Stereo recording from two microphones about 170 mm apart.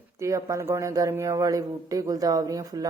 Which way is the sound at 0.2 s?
20° right (ahead or behind).